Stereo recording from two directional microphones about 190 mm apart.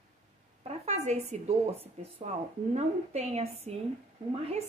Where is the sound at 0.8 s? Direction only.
35° right (ahead or behind).